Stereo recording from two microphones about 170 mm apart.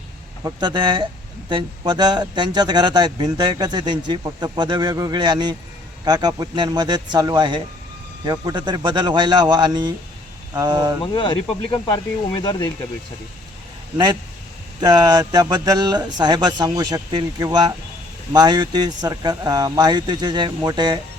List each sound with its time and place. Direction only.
0.4 s a man's voice: 25° right (ahead or behind)
11.0 s speech: 25° left (ahead or behind)
14.8 s a man's voice: 20° right (ahead or behind)